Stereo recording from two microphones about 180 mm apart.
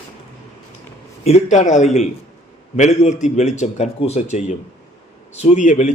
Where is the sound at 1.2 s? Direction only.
40° left (ahead or behind).